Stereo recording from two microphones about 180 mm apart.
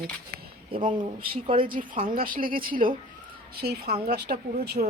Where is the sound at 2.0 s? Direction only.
50° right (ahead or behind).